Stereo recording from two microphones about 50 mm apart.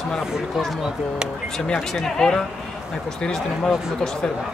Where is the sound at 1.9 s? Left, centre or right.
Centre.